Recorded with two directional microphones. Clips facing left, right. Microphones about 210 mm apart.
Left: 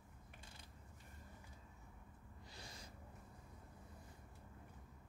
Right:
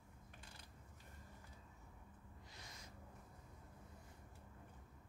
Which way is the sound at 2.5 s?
30° left (ahead or behind).